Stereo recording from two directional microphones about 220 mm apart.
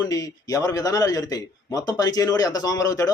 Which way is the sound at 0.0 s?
15° left (ahead or behind).